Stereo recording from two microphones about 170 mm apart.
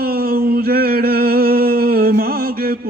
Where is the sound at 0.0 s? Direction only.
65° right (ahead or behind).